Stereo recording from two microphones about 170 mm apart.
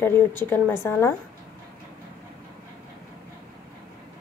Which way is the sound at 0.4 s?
10° left (ahead or behind).